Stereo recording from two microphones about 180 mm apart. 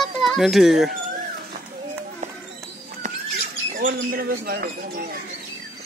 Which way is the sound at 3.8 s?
55° right (ahead or behind).